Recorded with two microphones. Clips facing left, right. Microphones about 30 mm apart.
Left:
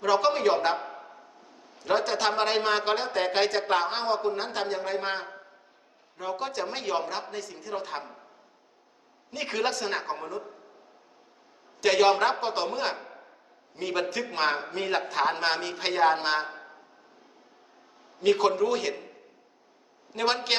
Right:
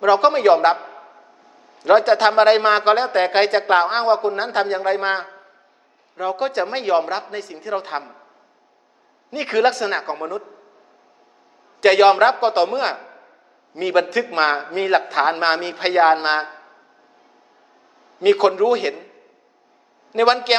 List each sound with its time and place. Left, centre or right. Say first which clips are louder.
0.0 s speech: right 9 dB; right
0.8 s a sound: right 2 dB; centre
1.8 s speech: right 12 dB; right
9.3 s speech: right 11 dB; right
11.8 s speech: right 9 dB; right
18.2 s speech: right 8 dB; right
20.1 s speech: right 11 dB; right